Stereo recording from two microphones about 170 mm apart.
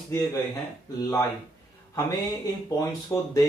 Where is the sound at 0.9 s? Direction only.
20° left (ahead or behind).